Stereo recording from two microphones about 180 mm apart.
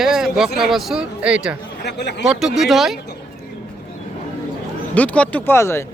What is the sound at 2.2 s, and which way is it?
Speech, centre (ahead or behind).